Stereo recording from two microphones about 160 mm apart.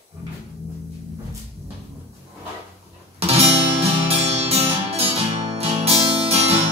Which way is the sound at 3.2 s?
40° right (ahead or behind).